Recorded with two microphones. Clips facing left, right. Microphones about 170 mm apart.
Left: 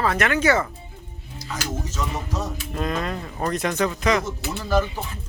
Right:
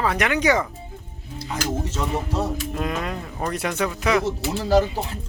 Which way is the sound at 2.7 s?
10° right (ahead or behind).